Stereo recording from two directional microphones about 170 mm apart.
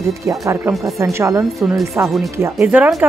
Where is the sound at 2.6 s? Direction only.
5° right (ahead or behind).